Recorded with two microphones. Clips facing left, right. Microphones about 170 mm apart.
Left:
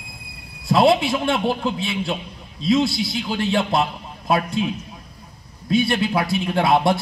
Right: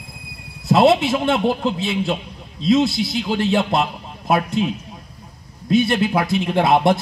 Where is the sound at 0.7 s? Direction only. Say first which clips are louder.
Right 2 dB; 25° right (ahead or behind).